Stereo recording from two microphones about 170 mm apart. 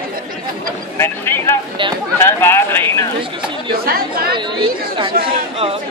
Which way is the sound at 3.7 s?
60° right (ahead or behind).